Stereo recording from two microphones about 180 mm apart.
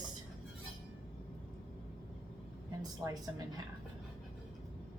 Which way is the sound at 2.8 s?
20° right (ahead or behind).